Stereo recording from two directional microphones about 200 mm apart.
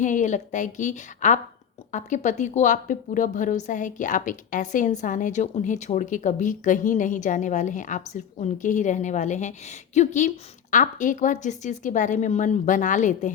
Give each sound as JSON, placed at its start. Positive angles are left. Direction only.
{"t": 0.0, "sound": "speech", "side_deg": 40}